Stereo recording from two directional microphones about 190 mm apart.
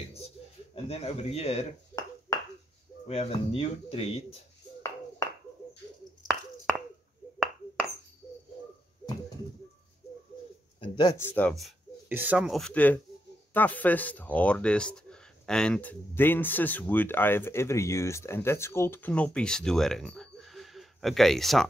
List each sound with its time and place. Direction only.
0.8 s speech: 30° left (ahead or behind)
2.0 s finger snapping: 15° left (ahead or behind)
3.1 s speech: 30° left (ahead or behind)
10.8 s speech: 20° left (ahead or behind); by 11.7 s 5° left (ahead or behind)
12.1 s speech: 10° right (ahead or behind)